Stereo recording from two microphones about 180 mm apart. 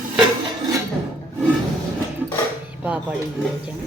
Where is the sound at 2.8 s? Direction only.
5° right (ahead or behind).